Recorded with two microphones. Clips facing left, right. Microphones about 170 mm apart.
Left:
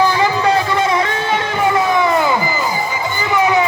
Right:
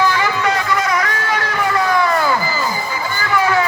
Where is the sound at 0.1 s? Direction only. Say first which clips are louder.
Left 4 dB; 30° left (ahead or behind).